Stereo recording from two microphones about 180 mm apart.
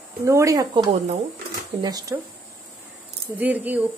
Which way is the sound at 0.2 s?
15° right (ahead or behind).